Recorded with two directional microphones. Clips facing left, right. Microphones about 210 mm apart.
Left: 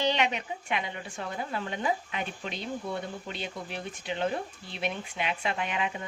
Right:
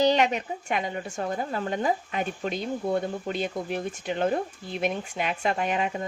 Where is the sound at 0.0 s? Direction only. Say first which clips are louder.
Right 6 dB; 45° right (ahead or behind).